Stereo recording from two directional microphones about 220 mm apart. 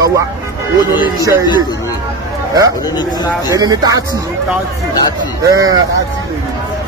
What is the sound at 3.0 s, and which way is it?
Speech, 15° left (ahead or behind).